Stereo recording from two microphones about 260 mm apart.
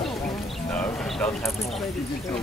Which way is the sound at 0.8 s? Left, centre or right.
Centre.